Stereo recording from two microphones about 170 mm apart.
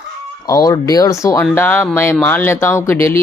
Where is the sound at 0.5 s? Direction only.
20° left (ahead or behind).